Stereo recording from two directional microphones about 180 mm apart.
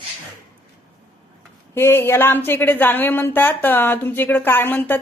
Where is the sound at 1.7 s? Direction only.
10° left (ahead or behind).